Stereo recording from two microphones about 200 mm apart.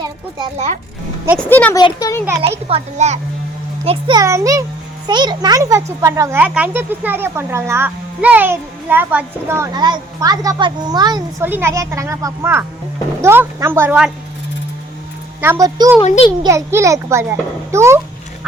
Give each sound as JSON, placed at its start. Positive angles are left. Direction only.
{"t": 0.0, "sound": "a sound", "side_deg": -20}
{"t": 1.4, "sound": "speech", "side_deg": 10}
{"t": 2.4, "sound": "a child's voice", "side_deg": -30}
{"t": 15.4, "sound": "speech", "side_deg": -15}
{"t": 16.0, "sound": "a child's voice", "side_deg": 30}
{"t": 16.4, "sound": "speech", "side_deg": -15}